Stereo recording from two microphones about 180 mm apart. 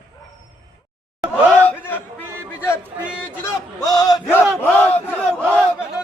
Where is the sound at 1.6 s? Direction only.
10° left (ahead or behind).